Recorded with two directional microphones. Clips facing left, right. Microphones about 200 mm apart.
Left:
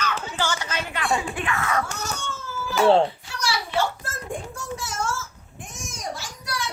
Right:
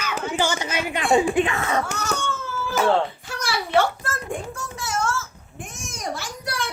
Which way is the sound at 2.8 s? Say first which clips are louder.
Left 4 dB; 25° left (ahead or behind).